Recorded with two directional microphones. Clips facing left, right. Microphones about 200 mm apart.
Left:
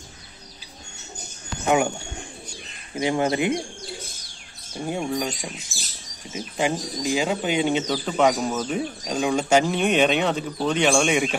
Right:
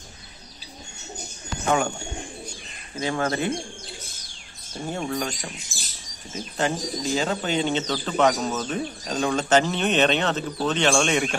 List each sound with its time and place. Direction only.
1.7 s speech: 15° left (ahead or behind)
3.0 s speech: 20° left (ahead or behind)
4.8 s speech: 10° left (ahead or behind)
6.3 s speech: 10° left (ahead or behind)